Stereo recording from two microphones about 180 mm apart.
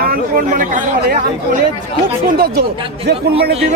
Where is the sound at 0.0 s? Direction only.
55° right (ahead or behind).